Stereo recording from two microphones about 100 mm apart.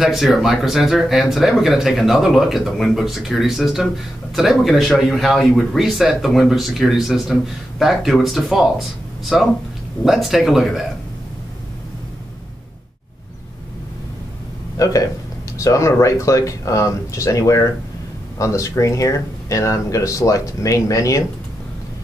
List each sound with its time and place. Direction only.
0.0 s speech: 5° right (ahead or behind)
14.8 s speech: 35° left (ahead or behind)